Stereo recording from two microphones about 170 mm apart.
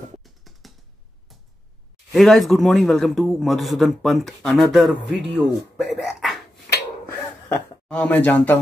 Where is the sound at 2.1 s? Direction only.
Centre (ahead or behind).